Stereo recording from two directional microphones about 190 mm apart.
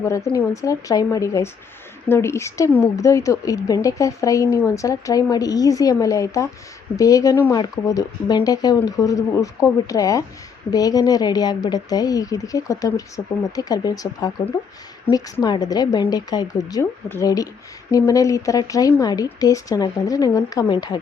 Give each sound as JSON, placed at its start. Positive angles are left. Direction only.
{"t": 0.0, "sound": "a woman's voice", "side_deg": 15}